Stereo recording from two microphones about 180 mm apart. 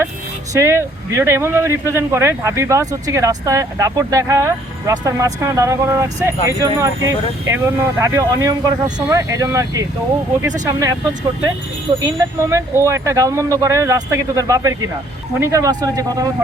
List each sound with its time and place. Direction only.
0.5 s speech: 15° right (ahead or behind)
11.9 s speech: 20° right (ahead or behind)